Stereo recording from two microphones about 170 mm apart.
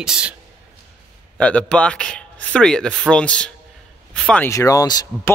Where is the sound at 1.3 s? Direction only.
5° left (ahead or behind).